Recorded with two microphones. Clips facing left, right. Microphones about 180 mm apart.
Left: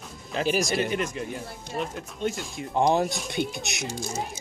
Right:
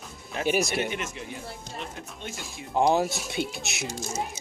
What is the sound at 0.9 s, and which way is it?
Speech, 35° left (ahead or behind).